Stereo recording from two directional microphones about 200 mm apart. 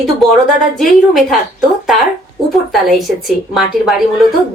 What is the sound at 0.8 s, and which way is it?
Speech, centre (ahead or behind).